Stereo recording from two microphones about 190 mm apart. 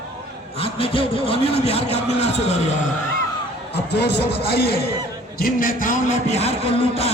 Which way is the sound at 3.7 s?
60° left (ahead or behind).